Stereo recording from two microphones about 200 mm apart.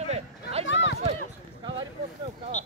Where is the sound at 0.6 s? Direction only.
65° left (ahead or behind).